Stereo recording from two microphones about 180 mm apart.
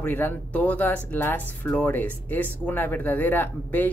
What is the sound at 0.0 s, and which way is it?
Speech, 10° left (ahead or behind).